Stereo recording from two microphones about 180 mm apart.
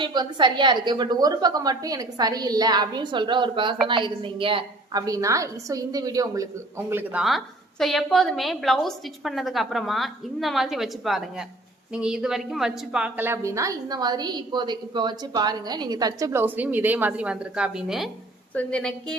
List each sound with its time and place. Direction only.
0.0 s a woman's voice: 25° right (ahead or behind)
6.9 s a woman's voice: 5° right (ahead or behind)